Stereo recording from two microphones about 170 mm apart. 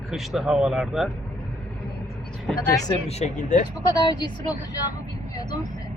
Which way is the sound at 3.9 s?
25° left (ahead or behind).